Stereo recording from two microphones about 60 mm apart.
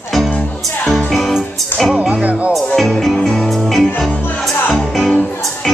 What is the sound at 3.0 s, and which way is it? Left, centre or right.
Music, centre.